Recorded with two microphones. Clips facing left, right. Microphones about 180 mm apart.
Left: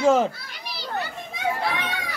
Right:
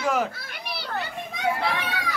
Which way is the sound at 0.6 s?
60° right (ahead or behind).